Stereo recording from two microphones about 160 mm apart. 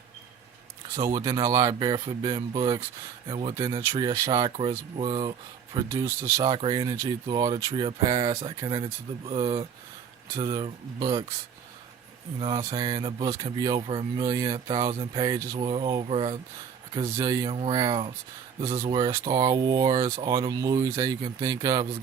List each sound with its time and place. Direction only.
0.9 s speech: 20° right (ahead or behind)
3.6 s speech: 20° right (ahead or behind)
5.7 s speech: 20° right (ahead or behind)
6.4 s speech: 30° right (ahead or behind)
12.4 s speech: 25° right (ahead or behind)
14.2 s speech: 20° right (ahead or behind)
17.2 s speech: 25° right (ahead or behind)
17.5 s speech: 35° right (ahead or behind)
19.1 s speech: 20° right (ahead or behind)